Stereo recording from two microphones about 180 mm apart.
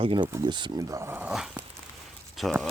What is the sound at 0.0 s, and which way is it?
Speech, 30° right (ahead or behind).